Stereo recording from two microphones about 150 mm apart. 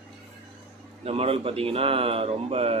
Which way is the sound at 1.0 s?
40° right (ahead or behind).